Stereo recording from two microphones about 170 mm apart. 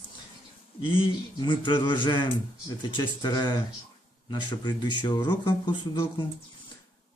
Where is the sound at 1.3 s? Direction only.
30° left (ahead or behind).